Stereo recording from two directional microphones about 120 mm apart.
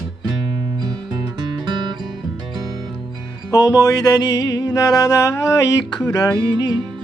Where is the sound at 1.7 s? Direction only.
40° right (ahead or behind).